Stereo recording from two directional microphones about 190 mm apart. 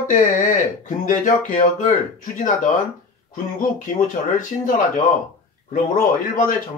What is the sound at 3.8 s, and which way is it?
Speech, 45° left (ahead or behind).